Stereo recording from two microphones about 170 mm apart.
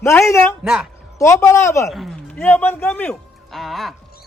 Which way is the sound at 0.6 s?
5° right (ahead or behind).